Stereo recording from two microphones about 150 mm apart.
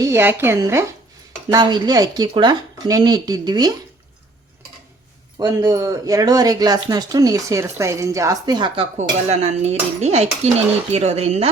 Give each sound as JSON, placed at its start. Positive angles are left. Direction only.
{"t": 0.0, "sound": "speech", "side_deg": -15}
{"t": 1.5, "sound": "speech", "side_deg": -30}
{"t": 5.4, "sound": "speech", "side_deg": -25}
{"t": 9.0, "sound": "cutlery", "side_deg": -50}